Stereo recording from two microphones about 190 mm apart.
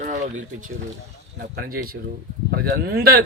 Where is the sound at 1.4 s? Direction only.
55° right (ahead or behind).